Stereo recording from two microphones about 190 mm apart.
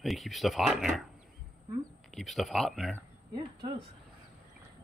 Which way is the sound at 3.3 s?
25° right (ahead or behind).